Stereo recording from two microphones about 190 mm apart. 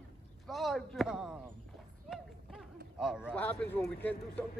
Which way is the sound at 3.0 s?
5° right (ahead or behind).